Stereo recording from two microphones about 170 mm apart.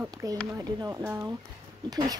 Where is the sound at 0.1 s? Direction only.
20° right (ahead or behind).